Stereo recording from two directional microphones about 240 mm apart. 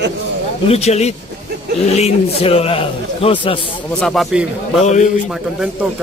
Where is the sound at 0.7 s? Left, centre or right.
Left.